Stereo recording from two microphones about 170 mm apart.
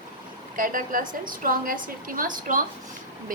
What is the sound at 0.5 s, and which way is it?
A woman's voice, 55° right (ahead or behind).